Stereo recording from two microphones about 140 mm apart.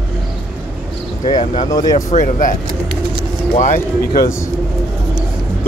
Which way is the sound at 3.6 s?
70° left (ahead or behind).